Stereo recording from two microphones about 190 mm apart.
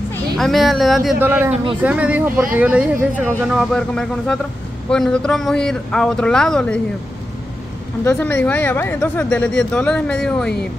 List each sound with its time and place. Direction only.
0.4 s speech: centre (ahead or behind)
1.2 s speech: 10° right (ahead or behind)
1.5 s a man's voice: 25° right (ahead or behind)
1.8 s speech: 5° right (ahead or behind)
8.0 s speech: 10° left (ahead or behind)